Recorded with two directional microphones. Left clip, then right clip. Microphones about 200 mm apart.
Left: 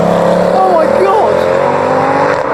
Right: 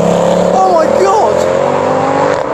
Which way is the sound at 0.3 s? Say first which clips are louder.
Even; centre (ahead or behind).